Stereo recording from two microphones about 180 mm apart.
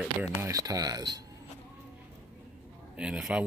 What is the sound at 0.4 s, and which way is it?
Speech, 20° right (ahead or behind).